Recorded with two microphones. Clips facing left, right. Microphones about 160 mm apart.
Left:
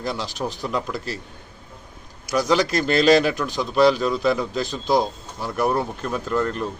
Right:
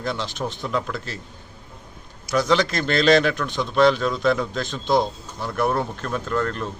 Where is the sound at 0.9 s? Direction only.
35° left (ahead or behind).